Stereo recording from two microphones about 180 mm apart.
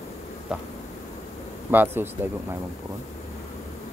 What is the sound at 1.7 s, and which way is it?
Speech, 10° right (ahead or behind).